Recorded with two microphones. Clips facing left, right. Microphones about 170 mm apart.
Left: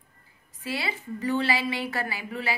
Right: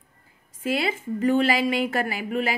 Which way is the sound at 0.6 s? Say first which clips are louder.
Right 7 dB; 50° right (ahead or behind).